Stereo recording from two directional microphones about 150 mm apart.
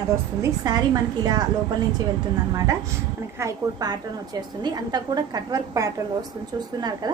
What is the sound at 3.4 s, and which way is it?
A woman's voice, 25° right (ahead or behind).